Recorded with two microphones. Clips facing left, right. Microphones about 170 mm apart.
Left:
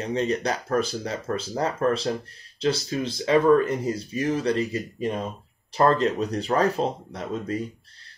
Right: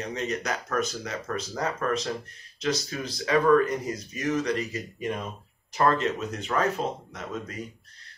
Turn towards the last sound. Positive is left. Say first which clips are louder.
# left 7 dB
turn(degrees=30)  # may be behind; listen again after turning